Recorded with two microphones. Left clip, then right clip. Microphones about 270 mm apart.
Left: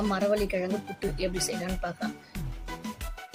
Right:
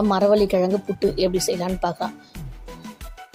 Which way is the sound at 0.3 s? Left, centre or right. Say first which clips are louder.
Right 11 dB; centre.